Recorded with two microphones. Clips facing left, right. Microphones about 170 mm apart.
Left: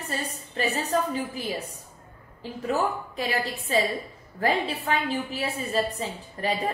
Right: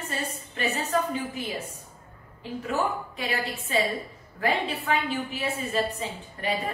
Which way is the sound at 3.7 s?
35° left (ahead or behind).